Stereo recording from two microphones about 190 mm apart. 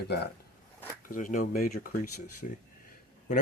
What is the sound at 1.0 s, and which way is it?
Speech, 45° left (ahead or behind).